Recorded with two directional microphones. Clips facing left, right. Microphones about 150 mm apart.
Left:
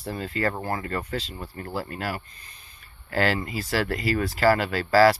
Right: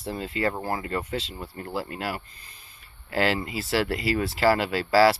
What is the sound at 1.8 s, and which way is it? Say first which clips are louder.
Speech: even; 20° right (ahead or behind).